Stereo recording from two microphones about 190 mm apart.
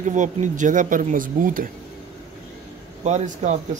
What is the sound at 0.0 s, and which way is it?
Speech, 40° right (ahead or behind).